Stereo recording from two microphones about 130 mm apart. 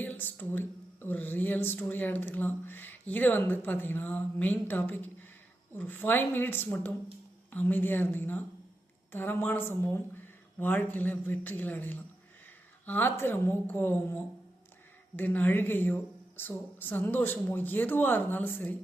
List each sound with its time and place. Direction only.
0.0 s speech: 15° left (ahead or behind)